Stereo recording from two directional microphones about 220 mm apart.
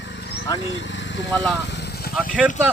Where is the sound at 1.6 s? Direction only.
50° left (ahead or behind).